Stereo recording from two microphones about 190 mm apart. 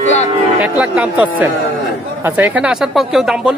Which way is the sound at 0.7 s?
5° right (ahead or behind).